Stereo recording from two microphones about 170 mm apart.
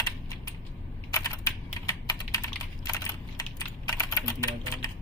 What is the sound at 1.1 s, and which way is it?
Typing, 20° left (ahead or behind).